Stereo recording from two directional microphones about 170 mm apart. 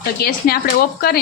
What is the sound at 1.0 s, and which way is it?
Speech, 65° left (ahead or behind).